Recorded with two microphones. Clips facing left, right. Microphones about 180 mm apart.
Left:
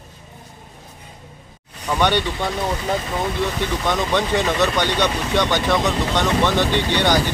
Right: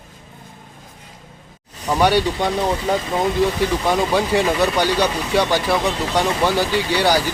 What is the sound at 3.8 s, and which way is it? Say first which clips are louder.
Speech: even; 10° right (ahead or behind).